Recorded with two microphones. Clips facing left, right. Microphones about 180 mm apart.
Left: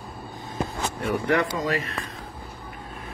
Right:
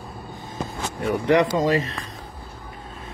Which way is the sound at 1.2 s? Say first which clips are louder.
Right 7 dB; 20° right (ahead or behind).